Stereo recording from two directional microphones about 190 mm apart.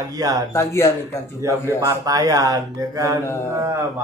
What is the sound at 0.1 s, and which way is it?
Speech, 20° right (ahead or behind).